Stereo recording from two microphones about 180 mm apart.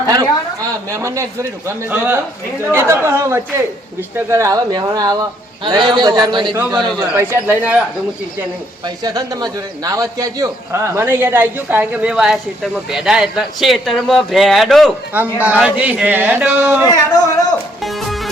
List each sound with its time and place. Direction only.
0.1 s a man's voice: 20° right (ahead or behind)
7.1 s a man's voice: 10° right (ahead or behind)
8.8 s a man's voice: 20° right (ahead or behind)
16.9 s speech: 20° left (ahead or behind)
17.8 s music: centre (ahead or behind)